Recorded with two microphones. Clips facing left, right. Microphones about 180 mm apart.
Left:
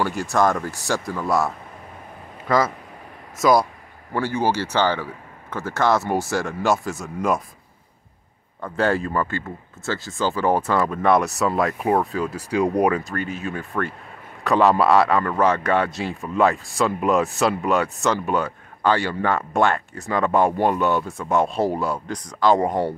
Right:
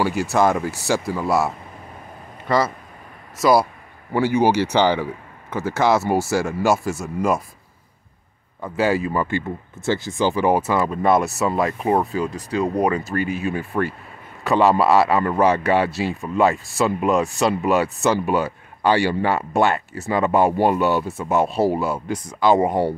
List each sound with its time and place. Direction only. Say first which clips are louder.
0.0 s speech: right 2 dB; 5° right (ahead or behind)
4.1 s speech: right 5 dB; 15° right (ahead or behind)
5.8 s speech: right 2 dB; 5° right (ahead or behind)
8.5 s speech: right 1 dB; 5° right (ahead or behind); by 13.0 s 10° left (ahead or behind)
13.0 s speech: right 4 dB; 10° right (ahead or behind)